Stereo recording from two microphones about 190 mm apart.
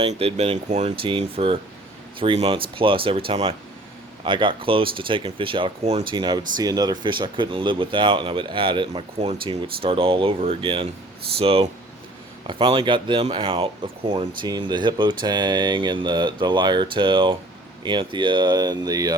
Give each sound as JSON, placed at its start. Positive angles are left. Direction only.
{"t": 0.0, "sound": "speech", "side_deg": -30}